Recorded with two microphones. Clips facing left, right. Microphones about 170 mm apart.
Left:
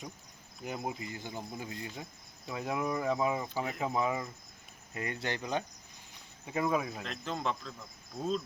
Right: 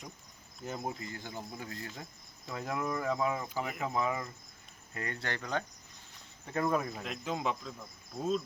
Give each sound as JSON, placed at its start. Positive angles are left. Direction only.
{"t": 0.6, "sound": "speech", "side_deg": 15}
{"t": 7.0, "sound": "speech", "side_deg": -5}